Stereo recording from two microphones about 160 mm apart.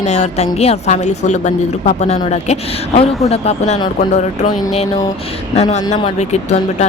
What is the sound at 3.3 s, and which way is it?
Speech, 45° left (ahead or behind).